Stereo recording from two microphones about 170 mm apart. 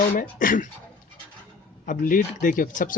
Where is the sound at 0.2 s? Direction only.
50° left (ahead or behind).